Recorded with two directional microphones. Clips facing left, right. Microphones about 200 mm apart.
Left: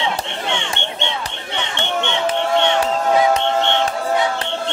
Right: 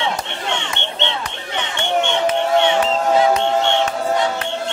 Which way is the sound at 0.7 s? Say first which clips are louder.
Right 1 dB; 15° left (ahead or behind).